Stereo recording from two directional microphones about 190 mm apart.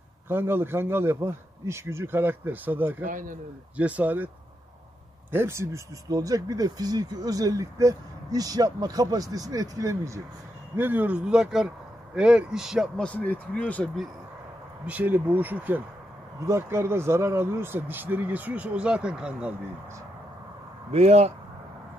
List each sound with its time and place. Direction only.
0.3 s speech: 10° right (ahead or behind)
3.1 s speech: 45° right (ahead or behind)
3.7 s speech: 5° right (ahead or behind)
5.3 s speech: 15° right (ahead or behind); by 14.0 s 5° left (ahead or behind)
14.9 s speech: 10° right (ahead or behind)
20.9 s speech: 35° right (ahead or behind)